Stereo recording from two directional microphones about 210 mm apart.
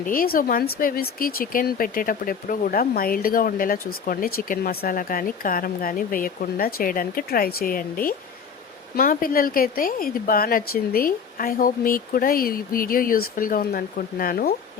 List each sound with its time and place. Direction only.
0.0 s speech: 40° left (ahead or behind)